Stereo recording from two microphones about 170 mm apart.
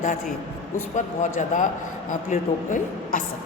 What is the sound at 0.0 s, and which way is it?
Speech, 50° left (ahead or behind).